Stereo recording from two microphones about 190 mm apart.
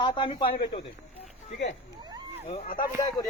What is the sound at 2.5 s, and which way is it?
Speech, 45° left (ahead or behind).